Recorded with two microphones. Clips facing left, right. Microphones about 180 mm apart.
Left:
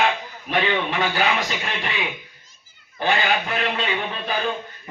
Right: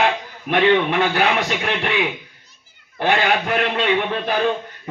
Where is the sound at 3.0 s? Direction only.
60° right (ahead or behind).